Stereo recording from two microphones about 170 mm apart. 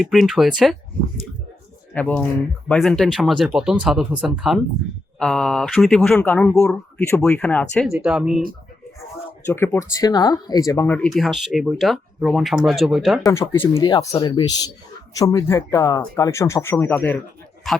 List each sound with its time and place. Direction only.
0.0 s speech: centre (ahead or behind)
1.9 s speech: 5° left (ahead or behind)
7.9 s speech: 5° right (ahead or behind)
9.5 s speech: 15° left (ahead or behind); by 13.2 s centre (ahead or behind)
13.2 s speech: 20° left (ahead or behind)
17.7 s speech: centre (ahead or behind)